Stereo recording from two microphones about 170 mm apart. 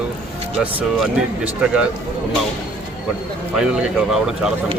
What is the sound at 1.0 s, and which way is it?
Speech, 5° right (ahead or behind).